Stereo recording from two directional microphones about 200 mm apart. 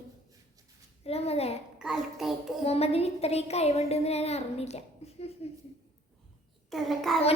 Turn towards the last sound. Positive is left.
turn(degrees=0)  # may be behind; listen again after turning